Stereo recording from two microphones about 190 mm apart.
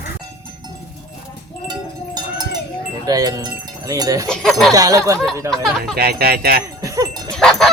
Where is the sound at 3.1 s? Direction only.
20° right (ahead or behind).